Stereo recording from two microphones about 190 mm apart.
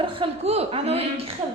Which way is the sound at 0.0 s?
30° right (ahead or behind).